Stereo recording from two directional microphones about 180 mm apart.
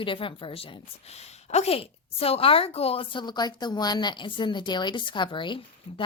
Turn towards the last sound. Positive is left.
turn(degrees=25)  # may be behind; listen again after turning